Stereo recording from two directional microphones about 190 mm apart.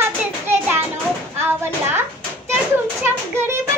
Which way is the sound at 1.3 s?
10° right (ahead or behind).